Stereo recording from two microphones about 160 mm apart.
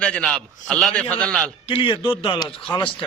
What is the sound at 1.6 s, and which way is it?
Speech, 35° left (ahead or behind).